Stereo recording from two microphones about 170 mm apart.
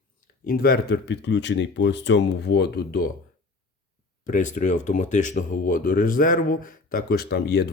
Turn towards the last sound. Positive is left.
turn(degrees=75)  # may be behind; listen again after turning